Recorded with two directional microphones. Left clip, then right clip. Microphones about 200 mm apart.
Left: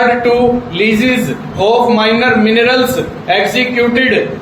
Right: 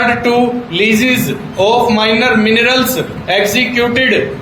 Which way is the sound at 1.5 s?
50° right (ahead or behind).